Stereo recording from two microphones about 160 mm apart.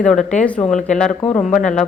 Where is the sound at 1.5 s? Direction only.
50° left (ahead or behind).